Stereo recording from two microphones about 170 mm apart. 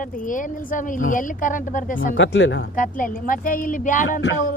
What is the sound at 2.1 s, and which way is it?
Speech, 90° left.